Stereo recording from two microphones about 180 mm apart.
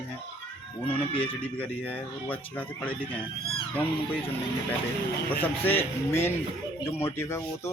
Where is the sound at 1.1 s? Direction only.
30° left (ahead or behind).